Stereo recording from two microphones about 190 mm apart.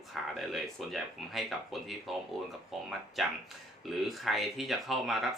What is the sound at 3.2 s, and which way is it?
Speech, centre (ahead or behind).